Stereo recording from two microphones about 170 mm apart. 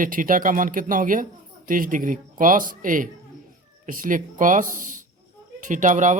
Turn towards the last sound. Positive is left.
turn(degrees=-45)  # may be behind; listen again after turning